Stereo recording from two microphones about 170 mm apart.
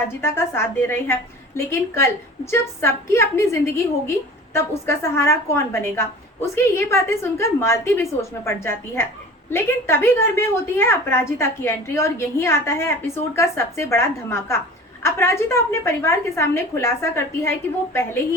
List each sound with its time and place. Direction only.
0.1 s a woman's voice: 15° left (ahead or behind)